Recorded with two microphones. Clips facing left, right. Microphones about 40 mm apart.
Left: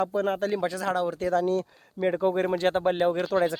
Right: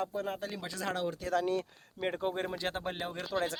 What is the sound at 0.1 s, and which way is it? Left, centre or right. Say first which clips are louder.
Speech: left 10 dB; left.